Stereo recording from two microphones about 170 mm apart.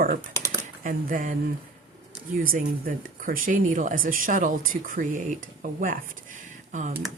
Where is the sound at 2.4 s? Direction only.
55° right (ahead or behind).